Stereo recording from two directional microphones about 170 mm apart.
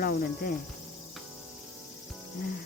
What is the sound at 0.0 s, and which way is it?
Speech, 60° left (ahead or behind).